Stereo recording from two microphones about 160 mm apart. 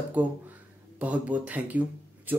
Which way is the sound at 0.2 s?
10° right (ahead or behind).